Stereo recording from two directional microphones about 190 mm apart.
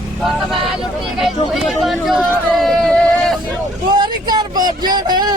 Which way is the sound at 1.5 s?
Centre (ahead or behind).